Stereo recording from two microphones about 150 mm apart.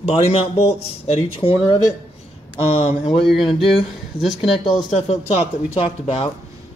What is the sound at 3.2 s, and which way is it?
Speech, centre (ahead or behind).